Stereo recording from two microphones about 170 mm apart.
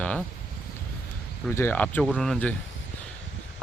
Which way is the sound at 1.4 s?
15° left (ahead or behind).